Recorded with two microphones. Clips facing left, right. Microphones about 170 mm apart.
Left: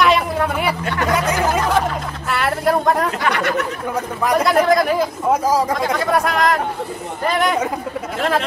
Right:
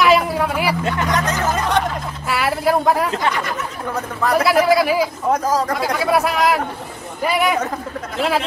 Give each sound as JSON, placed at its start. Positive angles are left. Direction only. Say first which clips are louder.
{"t": 0.0, "sound": "a sound", "louder": "right 1 dB", "side_deg": 0}
{"t": 1.1, "sound": "speech", "louder": "left 5 dB", "side_deg": 10}
{"t": 3.3, "sound": "speech", "louder": "left 3 dB", "side_deg": 70}
{"t": 3.9, "sound": "a man's voice", "louder": "even", "side_deg": 10}
{"t": 4.4, "sound": "speech", "louder": "even", "side_deg": -5}
{"t": 5.3, "sound": "a man's voice", "louder": "left 2 dB", "side_deg": 10}
{"t": 5.8, "sound": "speech", "louder": "even", "side_deg": -5}